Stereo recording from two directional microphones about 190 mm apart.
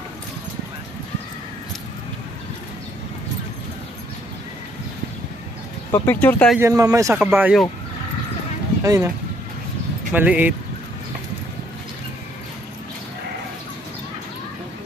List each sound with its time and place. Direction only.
5.9 s speech: 10° left (ahead or behind)
6.6 s speech: 15° right (ahead or behind)
7.2 s speech: 5° right (ahead or behind)
8.8 s speech: 15° right (ahead or behind)
10.1 s speech: 10° right (ahead or behind)